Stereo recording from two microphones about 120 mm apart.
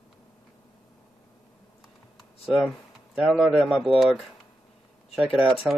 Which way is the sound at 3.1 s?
5° right (ahead or behind).